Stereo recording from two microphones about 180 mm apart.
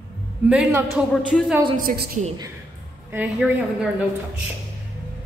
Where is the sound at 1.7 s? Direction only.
55° right (ahead or behind).